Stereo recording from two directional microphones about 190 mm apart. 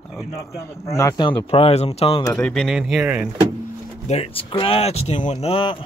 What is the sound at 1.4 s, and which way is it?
Speech, 30° left (ahead or behind).